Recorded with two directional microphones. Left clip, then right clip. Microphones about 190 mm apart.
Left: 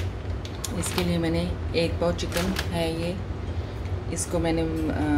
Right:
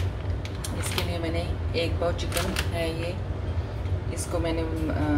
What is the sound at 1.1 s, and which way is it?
Speech, 30° left (ahead or behind).